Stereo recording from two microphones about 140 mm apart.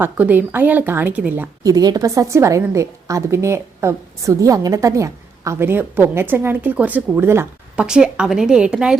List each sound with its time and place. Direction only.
0.0 s speech: 15° right (ahead or behind)
1.6 s a woman's voice: 30° right (ahead or behind); by 9.0 s 5° right (ahead or behind)